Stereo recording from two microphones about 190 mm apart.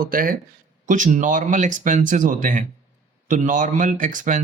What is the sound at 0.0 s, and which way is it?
Speech, 50° right (ahead or behind).